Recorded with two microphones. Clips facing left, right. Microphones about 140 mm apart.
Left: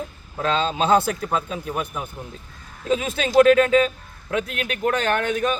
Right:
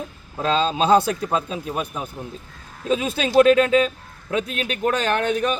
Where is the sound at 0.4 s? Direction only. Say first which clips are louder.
Right 2 dB; 30° right (ahead or behind).